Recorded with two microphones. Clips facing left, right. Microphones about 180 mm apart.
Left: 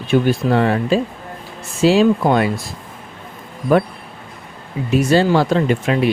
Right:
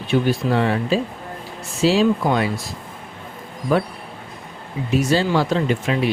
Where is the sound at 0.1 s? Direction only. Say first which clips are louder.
Left 3 dB; 50° left (ahead or behind).